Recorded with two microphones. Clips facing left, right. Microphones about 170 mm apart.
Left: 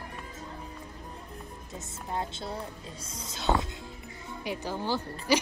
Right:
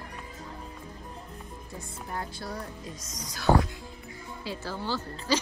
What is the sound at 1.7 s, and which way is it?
Speech, 25° left (ahead or behind).